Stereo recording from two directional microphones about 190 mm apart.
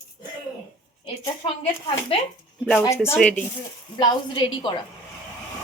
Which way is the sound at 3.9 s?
25° left (ahead or behind).